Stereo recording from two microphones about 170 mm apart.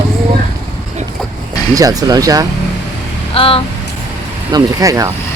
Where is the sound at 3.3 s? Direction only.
30° left (ahead or behind).